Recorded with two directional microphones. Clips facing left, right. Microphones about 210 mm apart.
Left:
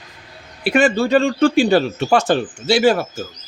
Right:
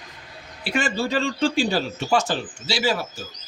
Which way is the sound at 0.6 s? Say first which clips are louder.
Left 9 dB; 60° left (ahead or behind).